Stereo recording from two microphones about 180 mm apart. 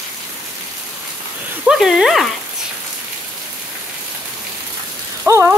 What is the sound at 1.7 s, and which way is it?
Speech, 5° right (ahead or behind).